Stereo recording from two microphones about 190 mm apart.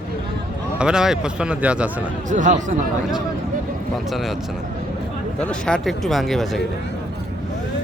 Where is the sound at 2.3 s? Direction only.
40° right (ahead or behind).